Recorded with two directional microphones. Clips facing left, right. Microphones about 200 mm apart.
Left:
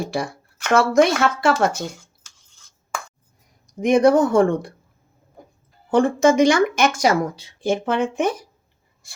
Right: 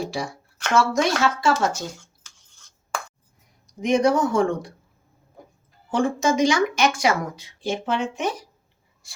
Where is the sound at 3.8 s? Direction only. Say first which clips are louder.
Left 5 dB; 55° left (ahead or behind).